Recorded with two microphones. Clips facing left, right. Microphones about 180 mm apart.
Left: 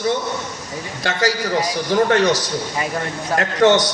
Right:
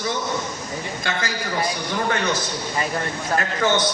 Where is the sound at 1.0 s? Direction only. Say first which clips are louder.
Left 10 dB; 85° left.